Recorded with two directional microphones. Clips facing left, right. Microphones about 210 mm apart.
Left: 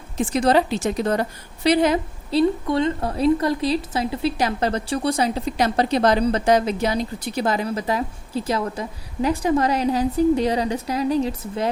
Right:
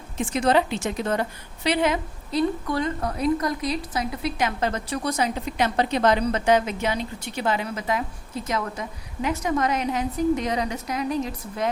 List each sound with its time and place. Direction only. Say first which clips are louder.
0.2 s a woman's voice: left 3 dB; 35° left (ahead or behind)
2.6 s a woman's voice: left 4 dB; 25° left (ahead or behind)